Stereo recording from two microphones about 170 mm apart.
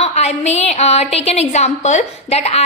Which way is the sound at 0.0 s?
40° left (ahead or behind).